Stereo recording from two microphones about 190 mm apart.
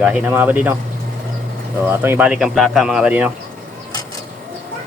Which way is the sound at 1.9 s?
10° right (ahead or behind).